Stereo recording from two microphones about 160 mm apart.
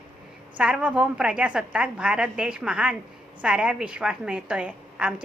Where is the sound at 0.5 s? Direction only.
5° right (ahead or behind).